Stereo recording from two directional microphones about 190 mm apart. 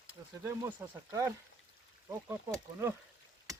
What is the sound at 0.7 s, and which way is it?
Speech, 20° right (ahead or behind).